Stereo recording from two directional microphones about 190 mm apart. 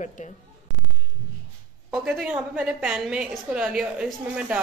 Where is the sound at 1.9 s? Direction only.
5° right (ahead or behind).